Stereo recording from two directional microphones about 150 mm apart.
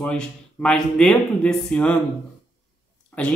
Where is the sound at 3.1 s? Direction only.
10° left (ahead or behind).